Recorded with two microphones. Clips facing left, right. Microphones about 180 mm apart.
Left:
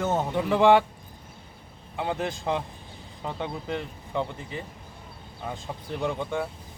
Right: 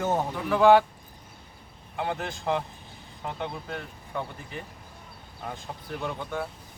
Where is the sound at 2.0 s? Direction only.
15° left (ahead or behind).